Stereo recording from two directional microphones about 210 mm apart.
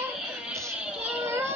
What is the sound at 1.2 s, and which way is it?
Child singing, 10° right (ahead or behind).